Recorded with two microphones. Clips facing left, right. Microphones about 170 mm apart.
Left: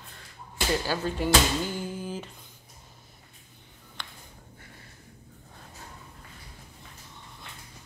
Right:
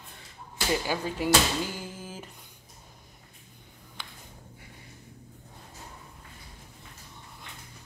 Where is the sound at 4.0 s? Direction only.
5° right (ahead or behind).